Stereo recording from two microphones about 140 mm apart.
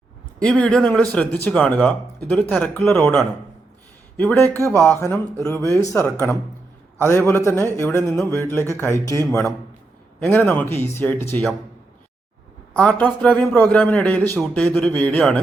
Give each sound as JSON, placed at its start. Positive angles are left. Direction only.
{"t": 0.4, "sound": "a man's voice", "side_deg": 5}
{"t": 12.7, "sound": "a man's voice", "side_deg": 5}